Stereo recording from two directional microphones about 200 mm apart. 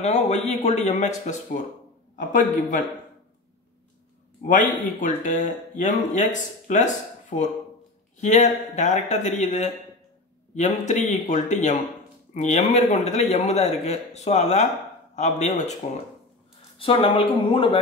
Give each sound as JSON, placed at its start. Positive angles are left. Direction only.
{"t": 0.0, "sound": "speech", "side_deg": 35}
{"t": 4.5, "sound": "speech", "side_deg": 40}